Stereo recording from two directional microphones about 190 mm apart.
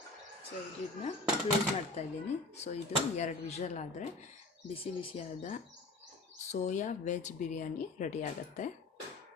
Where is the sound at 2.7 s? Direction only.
40° left (ahead or behind).